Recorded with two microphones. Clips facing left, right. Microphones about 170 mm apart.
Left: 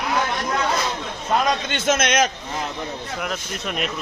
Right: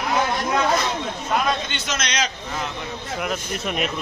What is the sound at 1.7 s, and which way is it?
Speech, 50° left (ahead or behind).